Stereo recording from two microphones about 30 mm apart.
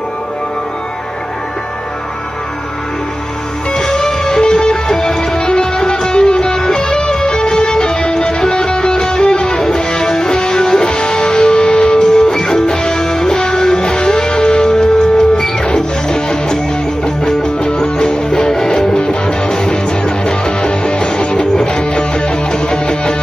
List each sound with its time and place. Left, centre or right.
3.7 s music: left
18.9 s music: left